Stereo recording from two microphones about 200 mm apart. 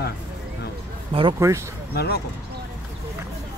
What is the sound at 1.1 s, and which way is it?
Speech, 25° right (ahead or behind).